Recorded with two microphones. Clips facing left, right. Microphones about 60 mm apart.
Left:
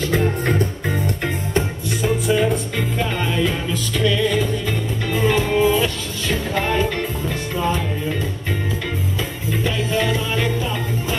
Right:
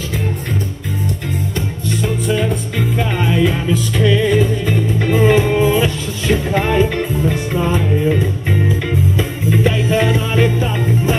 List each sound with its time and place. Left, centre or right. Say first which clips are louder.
2.0 s music: even; centre
4.0 s music: right 4 dB; right
9.6 s music: right 5 dB; right